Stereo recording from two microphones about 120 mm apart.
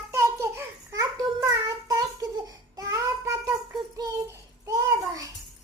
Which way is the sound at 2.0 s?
30° right (ahead or behind).